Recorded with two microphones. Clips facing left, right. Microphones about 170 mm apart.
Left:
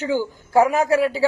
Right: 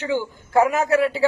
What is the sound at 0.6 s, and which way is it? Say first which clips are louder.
Speech: left 1 dB; 35° left (ahead or behind).